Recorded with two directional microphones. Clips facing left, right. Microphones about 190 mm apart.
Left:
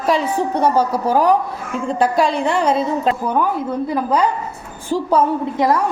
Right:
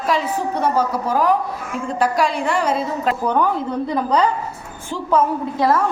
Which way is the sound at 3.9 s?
5° left (ahead or behind).